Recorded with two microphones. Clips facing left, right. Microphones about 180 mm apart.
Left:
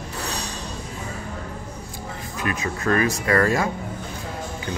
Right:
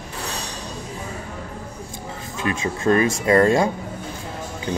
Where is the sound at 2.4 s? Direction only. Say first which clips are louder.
Right 4 dB; 25° right (ahead or behind).